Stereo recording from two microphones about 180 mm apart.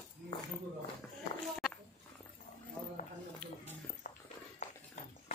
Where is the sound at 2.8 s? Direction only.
5° left (ahead or behind).